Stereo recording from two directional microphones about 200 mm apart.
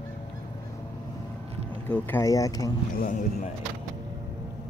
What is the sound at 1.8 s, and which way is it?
Speech, 10° left (ahead or behind).